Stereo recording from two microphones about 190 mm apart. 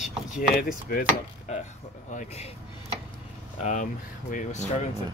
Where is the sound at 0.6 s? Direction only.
50° left (ahead or behind).